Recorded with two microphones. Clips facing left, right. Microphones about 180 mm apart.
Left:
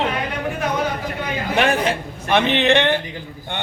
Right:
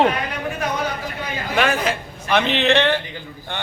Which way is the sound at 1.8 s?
25° left (ahead or behind).